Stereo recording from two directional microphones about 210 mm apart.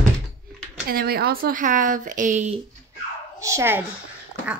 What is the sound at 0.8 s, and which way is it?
Speech, 45° right (ahead or behind).